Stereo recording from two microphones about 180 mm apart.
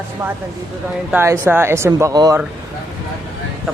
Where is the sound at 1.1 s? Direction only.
15° right (ahead or behind).